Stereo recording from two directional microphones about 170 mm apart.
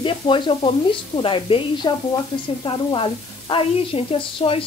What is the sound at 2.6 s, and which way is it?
Sizzle, 30° left (ahead or behind).